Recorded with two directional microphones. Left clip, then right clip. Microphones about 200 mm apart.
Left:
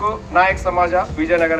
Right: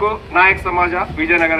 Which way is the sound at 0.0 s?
65° left (ahead or behind).